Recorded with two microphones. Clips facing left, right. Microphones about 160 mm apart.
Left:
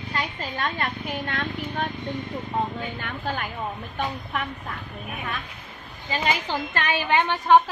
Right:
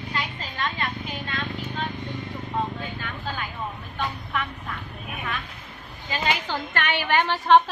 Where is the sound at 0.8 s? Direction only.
55° left (ahead or behind).